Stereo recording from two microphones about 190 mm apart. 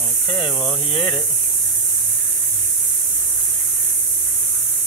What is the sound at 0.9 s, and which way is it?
Speech, 25° left (ahead or behind).